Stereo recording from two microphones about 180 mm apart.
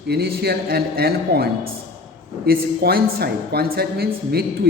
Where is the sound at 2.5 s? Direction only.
60° right (ahead or behind).